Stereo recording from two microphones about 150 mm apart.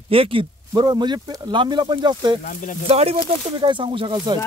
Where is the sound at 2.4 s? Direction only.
60° left (ahead or behind).